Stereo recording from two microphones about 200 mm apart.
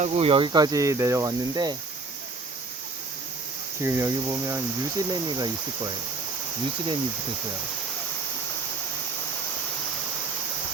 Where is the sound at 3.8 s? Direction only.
15° right (ahead or behind).